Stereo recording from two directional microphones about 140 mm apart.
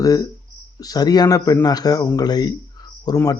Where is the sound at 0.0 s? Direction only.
25° left (ahead or behind).